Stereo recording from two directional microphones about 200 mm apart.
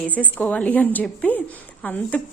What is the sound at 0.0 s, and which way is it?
A woman's voice, 5° left (ahead or behind).